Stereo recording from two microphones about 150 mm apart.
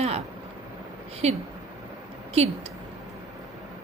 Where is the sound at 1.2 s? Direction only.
45° right (ahead or behind).